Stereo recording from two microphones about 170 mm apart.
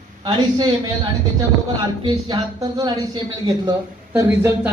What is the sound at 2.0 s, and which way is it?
Speech, 25° right (ahead or behind).